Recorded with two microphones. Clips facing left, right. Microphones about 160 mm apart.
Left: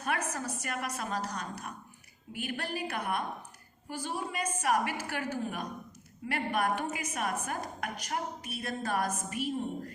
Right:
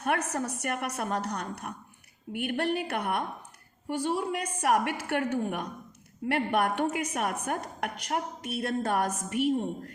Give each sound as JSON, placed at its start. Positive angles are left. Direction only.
{"t": 0.0, "sound": "speech", "side_deg": -65}